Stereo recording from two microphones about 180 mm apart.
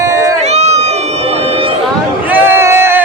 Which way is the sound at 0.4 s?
35° right (ahead or behind).